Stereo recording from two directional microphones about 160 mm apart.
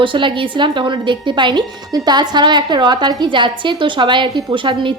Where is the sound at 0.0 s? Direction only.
30° right (ahead or behind).